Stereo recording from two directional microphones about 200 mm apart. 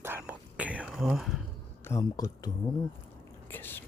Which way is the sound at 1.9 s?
15° left (ahead or behind).